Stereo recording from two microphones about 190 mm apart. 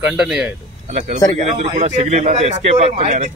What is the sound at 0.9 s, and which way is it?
A man's voice, 35° right (ahead or behind).